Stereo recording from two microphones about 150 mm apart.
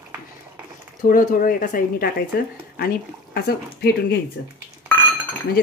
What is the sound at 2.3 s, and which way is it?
Speech, 90° left.